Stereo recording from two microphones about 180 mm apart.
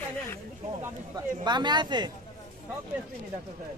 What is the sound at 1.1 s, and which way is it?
Speech, 25° right (ahead or behind).